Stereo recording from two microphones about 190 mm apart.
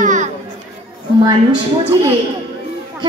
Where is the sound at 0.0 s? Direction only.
40° right (ahead or behind).